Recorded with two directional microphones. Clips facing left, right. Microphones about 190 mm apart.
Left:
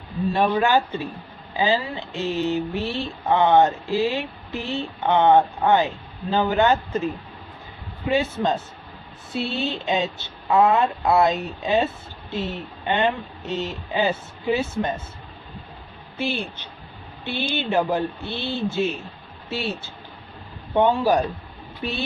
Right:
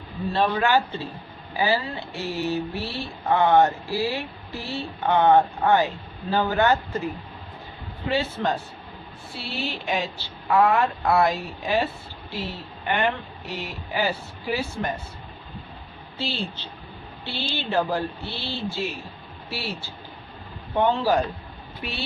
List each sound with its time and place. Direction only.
0.3 s speech: 15° left (ahead or behind)
8.1 s speech: 20° left (ahead or behind)
16.2 s speech: 20° left (ahead or behind)